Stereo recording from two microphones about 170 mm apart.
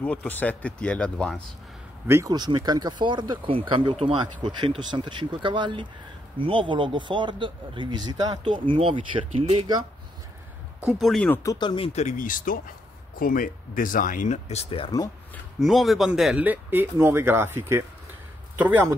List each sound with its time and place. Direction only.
0.0 s speech: 5° left (ahead or behind)
2.0 s speech: 20° right (ahead or behind); by 9.8 s 35° right (ahead or behind)
10.8 s speech: centre (ahead or behind)
11.5 s speech: 30° left (ahead or behind)
15.6 s speech: centre (ahead or behind)